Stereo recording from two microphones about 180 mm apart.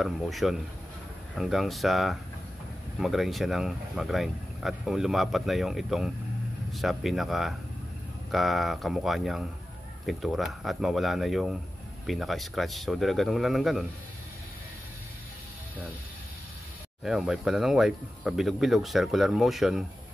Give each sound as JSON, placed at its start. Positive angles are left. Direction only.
{"t": 0.0, "sound": "speech", "side_deg": 0}
{"t": 17.0, "sound": "speech", "side_deg": -5}